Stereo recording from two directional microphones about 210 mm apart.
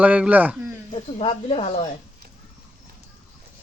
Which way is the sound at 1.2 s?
25° left (ahead or behind).